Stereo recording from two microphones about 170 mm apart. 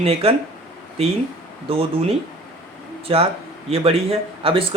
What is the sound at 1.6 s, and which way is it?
Speech, 35° right (ahead or behind).